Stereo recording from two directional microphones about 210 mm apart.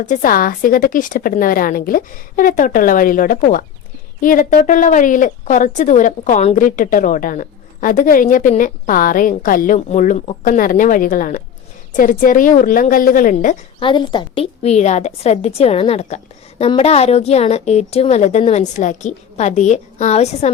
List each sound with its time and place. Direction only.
0.0 s speech: 40° left (ahead or behind)
13.7 s speech: 25° left (ahead or behind)